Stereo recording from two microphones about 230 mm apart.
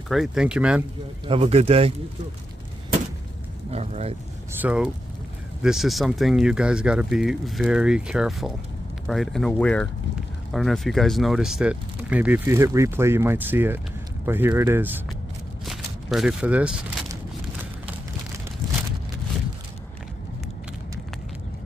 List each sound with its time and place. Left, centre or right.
0.1 s speech: centre
1.2 s speech: right
3.7 s speech: right
4.5 s speech: centre
15.6 s a sound: centre